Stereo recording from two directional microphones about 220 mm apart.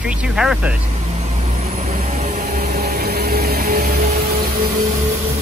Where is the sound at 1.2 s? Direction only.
30° right (ahead or behind).